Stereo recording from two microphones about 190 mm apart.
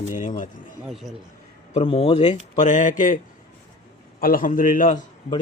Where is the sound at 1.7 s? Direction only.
30° left (ahead or behind).